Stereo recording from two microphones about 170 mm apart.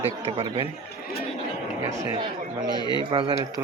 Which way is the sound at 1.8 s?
20° right (ahead or behind).